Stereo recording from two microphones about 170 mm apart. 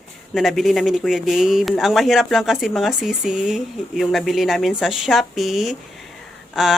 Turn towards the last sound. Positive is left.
turn(degrees=0)  # may be behind; listen again after turning